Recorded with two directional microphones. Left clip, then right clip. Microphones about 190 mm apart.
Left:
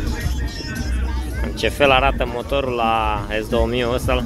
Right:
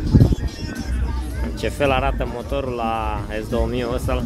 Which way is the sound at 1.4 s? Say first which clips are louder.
Left 4 dB; centre (ahead or behind).